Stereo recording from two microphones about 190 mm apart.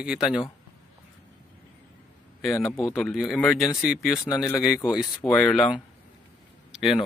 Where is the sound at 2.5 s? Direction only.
15° left (ahead or behind).